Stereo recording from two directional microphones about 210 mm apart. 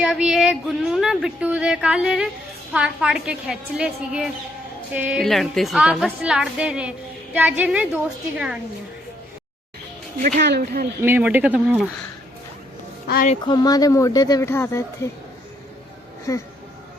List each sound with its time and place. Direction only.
0.0 s a woman's voice: 5° right (ahead or behind)
10.2 s speech: 35° right (ahead or behind)
10.4 s speech: 50° right (ahead or behind)
11.0 s a woman's voice: 10° right (ahead or behind)
13.1 s speech: 45° left (ahead or behind)
13.3 s speech: 20° left (ahead or behind)
16.3 s speech: 15° left (ahead or behind)